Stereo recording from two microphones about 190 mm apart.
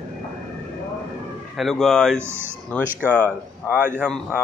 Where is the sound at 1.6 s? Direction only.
Centre (ahead or behind).